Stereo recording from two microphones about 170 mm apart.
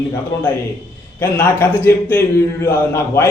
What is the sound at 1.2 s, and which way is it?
A man's voice, 15° left (ahead or behind).